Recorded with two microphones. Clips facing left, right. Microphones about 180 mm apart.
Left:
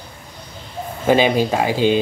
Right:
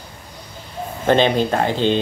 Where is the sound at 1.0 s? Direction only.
5° left (ahead or behind).